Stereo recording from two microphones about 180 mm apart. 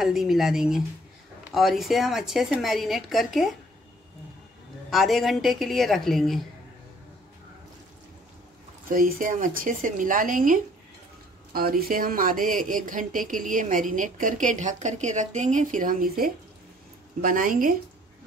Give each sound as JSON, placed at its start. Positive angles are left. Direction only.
{"t": 0.0, "sound": "speech", "side_deg": 0}
{"t": 4.9, "sound": "speech", "side_deg": 0}
{"t": 8.9, "sound": "speech", "side_deg": -50}